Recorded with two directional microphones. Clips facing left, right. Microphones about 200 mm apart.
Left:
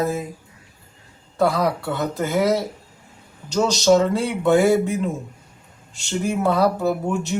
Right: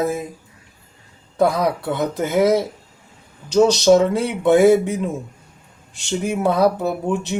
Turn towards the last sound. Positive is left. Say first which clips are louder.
# even
turn(degrees=-15)  # may be behind; listen again after turning